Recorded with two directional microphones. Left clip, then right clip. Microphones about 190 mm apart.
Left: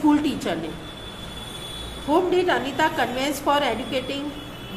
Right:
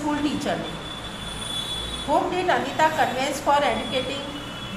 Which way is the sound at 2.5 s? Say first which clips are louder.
Right 1 dB; 25° left (ahead or behind).